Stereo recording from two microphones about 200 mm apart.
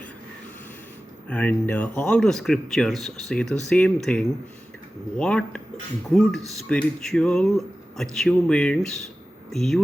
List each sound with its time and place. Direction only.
1.3 s speech: 5° left (ahead or behind)